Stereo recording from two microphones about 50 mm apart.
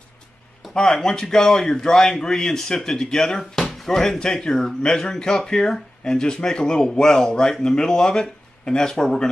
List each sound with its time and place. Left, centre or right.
0.7 s speech: centre